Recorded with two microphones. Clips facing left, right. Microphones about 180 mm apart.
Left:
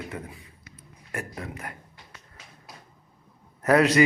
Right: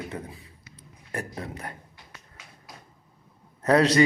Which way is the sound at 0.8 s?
30° right (ahead or behind).